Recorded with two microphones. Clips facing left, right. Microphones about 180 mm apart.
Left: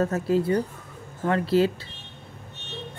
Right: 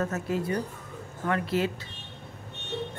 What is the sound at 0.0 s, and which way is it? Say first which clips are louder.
Speech: left 6 dB; 30° left (ahead or behind).